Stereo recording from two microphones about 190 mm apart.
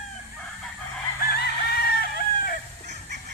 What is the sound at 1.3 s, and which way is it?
Chicken, 55° left (ahead or behind).